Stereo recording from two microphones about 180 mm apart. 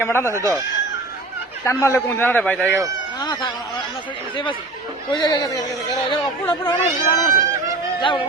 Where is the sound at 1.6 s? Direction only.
15° left (ahead or behind).